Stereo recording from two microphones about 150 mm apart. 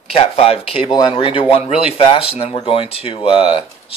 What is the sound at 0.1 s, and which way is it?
Speech, 40° left (ahead or behind).